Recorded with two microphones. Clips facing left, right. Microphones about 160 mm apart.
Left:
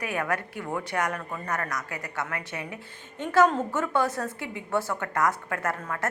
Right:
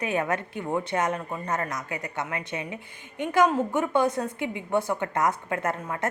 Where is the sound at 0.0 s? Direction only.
20° right (ahead or behind).